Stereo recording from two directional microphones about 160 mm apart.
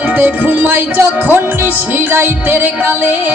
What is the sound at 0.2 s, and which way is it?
Music, 10° right (ahead or behind).